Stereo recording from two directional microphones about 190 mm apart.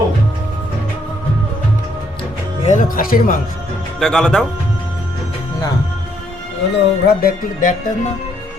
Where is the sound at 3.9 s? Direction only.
Centre (ahead or behind).